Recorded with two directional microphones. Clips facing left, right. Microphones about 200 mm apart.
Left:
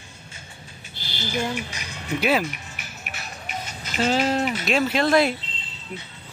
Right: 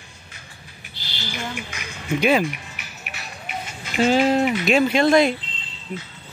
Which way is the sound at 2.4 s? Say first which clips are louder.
Right 4 dB; 45° left (ahead or behind).